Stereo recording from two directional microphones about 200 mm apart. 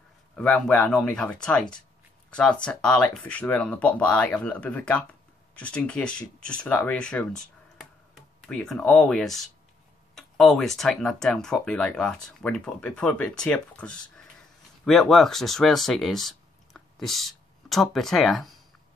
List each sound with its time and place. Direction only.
0.4 s speech: 5° left (ahead or behind)